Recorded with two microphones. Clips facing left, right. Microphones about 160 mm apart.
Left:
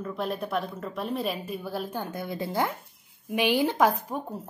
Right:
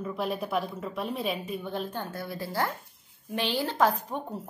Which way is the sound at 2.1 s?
20° left (ahead or behind).